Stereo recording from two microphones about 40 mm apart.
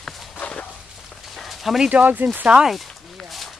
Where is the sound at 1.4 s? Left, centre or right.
Centre.